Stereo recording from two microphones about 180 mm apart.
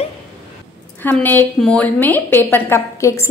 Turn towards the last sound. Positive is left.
turn(degrees=15)  # may be behind; listen again after turning